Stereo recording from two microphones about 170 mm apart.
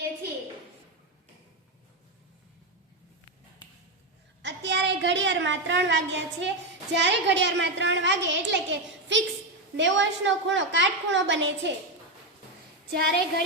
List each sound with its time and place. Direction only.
4.4 s a woman's voice: 90° right
12.9 s a woman's voice: 70° right (ahead or behind)